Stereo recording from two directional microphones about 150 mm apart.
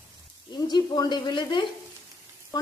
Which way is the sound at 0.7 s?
25° left (ahead or behind).